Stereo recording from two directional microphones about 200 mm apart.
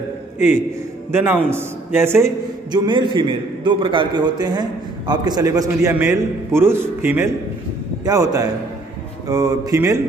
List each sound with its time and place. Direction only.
1.1 s a man's voice: 10° right (ahead or behind)